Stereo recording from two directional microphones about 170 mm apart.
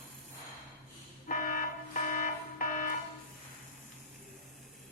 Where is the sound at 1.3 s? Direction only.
50° left (ahead or behind).